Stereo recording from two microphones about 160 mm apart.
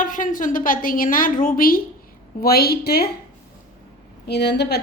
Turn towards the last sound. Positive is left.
turn(degrees=90)